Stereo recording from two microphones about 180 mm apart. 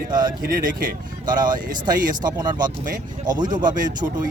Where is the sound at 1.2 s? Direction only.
25° right (ahead or behind).